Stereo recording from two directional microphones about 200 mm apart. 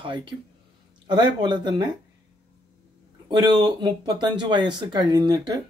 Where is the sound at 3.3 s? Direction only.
20° right (ahead or behind).